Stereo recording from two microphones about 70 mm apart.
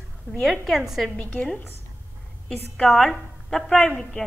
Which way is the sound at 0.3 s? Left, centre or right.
Centre.